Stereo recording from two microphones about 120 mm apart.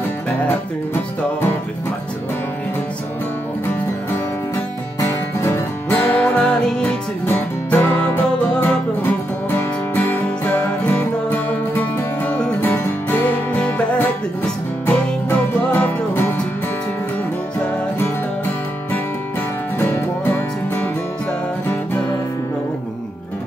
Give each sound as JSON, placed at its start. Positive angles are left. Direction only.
{"t": 5.4, "sound": "music", "side_deg": 15}
{"t": 19.8, "sound": "music", "side_deg": 15}